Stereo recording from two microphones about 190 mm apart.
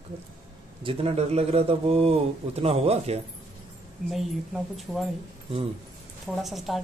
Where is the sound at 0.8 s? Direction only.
30° right (ahead or behind).